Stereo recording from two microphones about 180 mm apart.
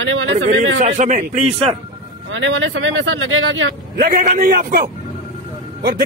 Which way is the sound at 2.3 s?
90° right.